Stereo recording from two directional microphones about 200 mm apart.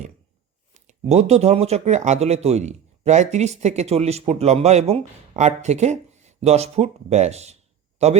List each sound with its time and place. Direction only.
0.7 s speech: 35° right (ahead or behind)